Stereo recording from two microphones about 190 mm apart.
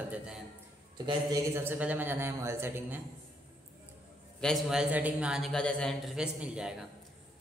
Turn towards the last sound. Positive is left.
turn(degrees=-5)  # may be behind; listen again after turning